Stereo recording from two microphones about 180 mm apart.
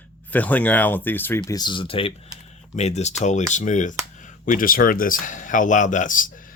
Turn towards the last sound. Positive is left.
turn(degrees=45)  # may be behind; listen again after turning